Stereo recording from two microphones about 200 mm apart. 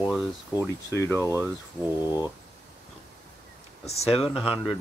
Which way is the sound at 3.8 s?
30° left (ahead or behind).